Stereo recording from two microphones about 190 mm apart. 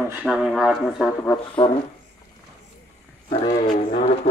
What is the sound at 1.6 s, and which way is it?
Speech, 20° left (ahead or behind).